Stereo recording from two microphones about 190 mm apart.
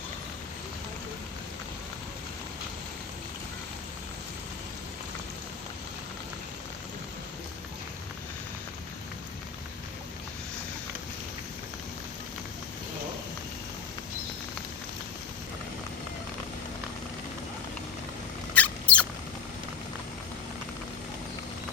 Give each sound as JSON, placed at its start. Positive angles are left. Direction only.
{"t": 18.5, "sound": "mouse", "side_deg": 5}